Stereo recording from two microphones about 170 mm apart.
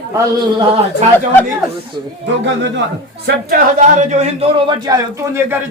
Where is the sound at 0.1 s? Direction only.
25° right (ahead or behind).